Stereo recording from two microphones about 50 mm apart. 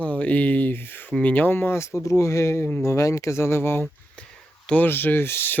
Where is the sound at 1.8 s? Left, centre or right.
Left.